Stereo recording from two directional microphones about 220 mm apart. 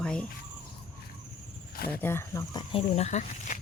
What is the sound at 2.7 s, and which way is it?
Speech, 25° left (ahead or behind).